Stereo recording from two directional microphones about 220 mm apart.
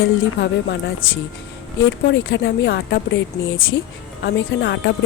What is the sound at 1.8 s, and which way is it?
Speech, 55° left (ahead or behind).